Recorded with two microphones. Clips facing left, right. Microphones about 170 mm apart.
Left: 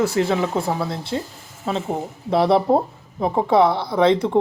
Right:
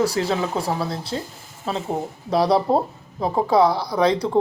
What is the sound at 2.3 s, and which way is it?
Speech, 25° left (ahead or behind).